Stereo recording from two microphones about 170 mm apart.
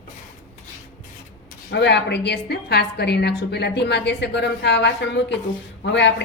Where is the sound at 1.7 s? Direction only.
85° left.